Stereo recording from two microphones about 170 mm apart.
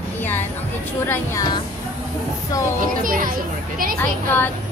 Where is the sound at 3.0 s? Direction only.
55° right (ahead or behind).